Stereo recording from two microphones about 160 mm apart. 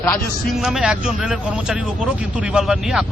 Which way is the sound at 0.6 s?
5° right (ahead or behind).